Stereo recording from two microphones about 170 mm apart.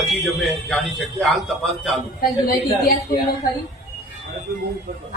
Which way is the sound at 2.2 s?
60° left (ahead or behind).